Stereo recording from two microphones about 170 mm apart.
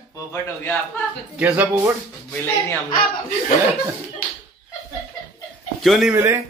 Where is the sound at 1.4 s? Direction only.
10° right (ahead or behind).